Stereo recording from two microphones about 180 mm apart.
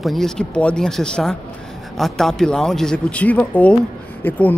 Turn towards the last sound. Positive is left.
turn(degrees=10)  # may be behind; listen again after turning